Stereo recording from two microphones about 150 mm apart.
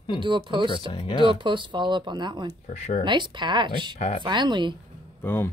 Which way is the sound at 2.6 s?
50° left (ahead or behind).